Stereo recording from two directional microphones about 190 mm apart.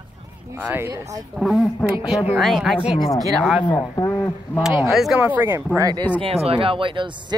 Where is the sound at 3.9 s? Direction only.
20° left (ahead or behind).